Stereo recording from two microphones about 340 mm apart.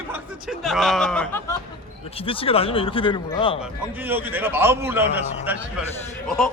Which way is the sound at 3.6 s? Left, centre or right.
Centre.